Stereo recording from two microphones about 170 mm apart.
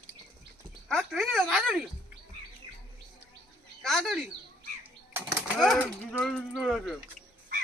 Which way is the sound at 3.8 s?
Centre (ahead or behind).